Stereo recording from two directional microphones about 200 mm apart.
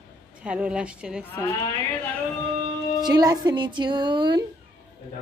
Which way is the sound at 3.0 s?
20° right (ahead or behind).